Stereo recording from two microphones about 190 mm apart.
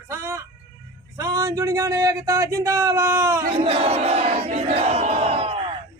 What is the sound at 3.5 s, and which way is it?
Crowd, 30° right (ahead or behind).